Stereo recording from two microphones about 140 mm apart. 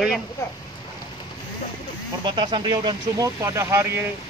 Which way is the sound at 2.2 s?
35° right (ahead or behind).